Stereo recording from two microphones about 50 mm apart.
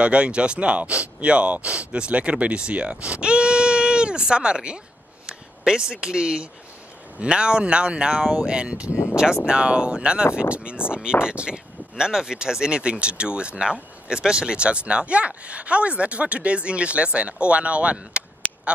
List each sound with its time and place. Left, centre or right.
0.0 s speech: right